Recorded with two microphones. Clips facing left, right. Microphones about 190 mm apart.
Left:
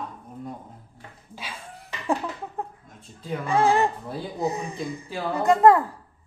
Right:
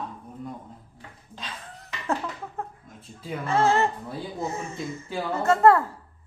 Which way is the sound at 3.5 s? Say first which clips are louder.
Left 1 dB; 15° left (ahead or behind).